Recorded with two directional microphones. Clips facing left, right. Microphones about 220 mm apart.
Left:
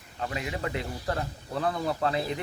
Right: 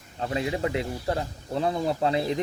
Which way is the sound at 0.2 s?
30° right (ahead or behind).